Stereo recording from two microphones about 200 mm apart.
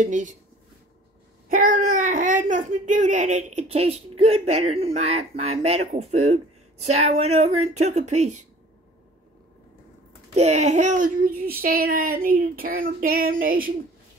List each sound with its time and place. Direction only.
0.0 s speech: 40° right (ahead or behind)
1.5 s speech: 45° right (ahead or behind)
10.3 s a child's voice: 35° right (ahead or behind)